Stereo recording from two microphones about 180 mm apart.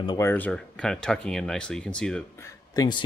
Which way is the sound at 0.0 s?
25° left (ahead or behind).